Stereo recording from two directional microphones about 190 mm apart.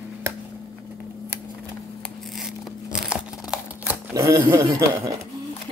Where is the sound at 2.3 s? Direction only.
Centre (ahead or behind).